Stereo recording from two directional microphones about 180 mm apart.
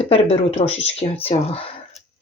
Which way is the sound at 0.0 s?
35° left (ahead or behind).